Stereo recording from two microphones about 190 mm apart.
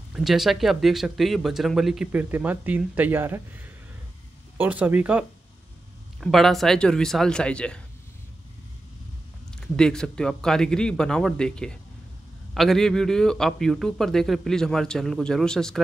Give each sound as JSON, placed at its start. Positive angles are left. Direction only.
{"t": 0.1, "sound": "speech", "side_deg": 0}
{"t": 6.2, "sound": "speech", "side_deg": 0}
{"t": 9.5, "sound": "speech", "side_deg": 5}